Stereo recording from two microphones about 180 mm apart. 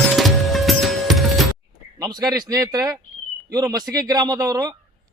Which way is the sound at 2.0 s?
20° right (ahead or behind).